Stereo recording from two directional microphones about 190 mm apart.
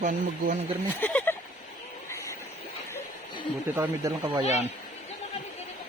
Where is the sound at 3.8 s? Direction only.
15° right (ahead or behind).